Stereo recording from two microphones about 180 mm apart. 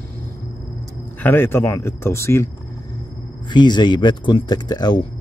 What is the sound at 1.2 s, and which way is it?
Speech, 10° left (ahead or behind).